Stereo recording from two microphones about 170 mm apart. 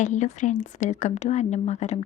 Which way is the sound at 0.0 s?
45° left (ahead or behind).